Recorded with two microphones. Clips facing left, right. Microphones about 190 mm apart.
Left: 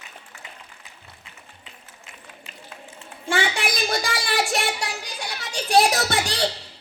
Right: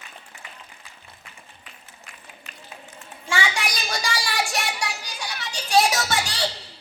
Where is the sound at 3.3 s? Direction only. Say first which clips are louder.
Left 3 dB; 55° left (ahead or behind).